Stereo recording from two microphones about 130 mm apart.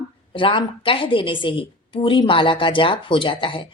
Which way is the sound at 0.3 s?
40° left (ahead or behind).